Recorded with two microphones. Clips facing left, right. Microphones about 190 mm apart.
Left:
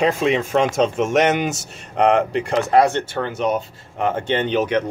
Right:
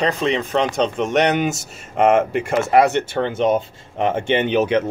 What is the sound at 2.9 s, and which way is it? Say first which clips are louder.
Speech: right 3 dB; 20° right (ahead or behind).